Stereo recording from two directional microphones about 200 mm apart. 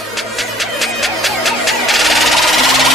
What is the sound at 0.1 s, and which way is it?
Music, centre (ahead or behind).